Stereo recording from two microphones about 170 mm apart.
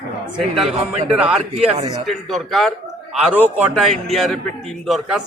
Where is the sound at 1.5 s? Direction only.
40° right (ahead or behind).